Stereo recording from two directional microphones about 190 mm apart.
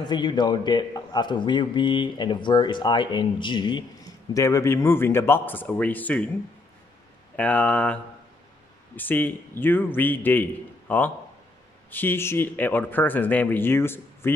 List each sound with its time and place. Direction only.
0.1 s a man's voice: 25° left (ahead or behind); by 6.2 s 10° left (ahead or behind)
7.3 s speech: 5° left (ahead or behind)